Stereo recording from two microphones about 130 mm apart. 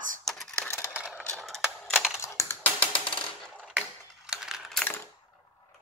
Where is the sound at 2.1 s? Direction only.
20° left (ahead or behind).